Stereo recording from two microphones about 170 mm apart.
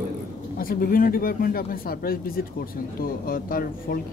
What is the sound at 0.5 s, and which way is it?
Speech, 60° left (ahead or behind).